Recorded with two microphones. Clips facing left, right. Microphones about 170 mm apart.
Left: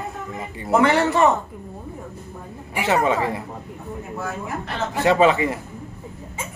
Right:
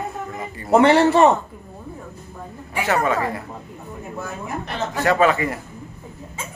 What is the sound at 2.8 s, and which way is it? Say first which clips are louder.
Speech: left 1 dB; 20° left (ahead or behind).